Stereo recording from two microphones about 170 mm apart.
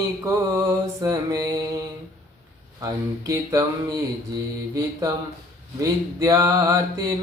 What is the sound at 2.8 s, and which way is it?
Mantra, 20° right (ahead or behind).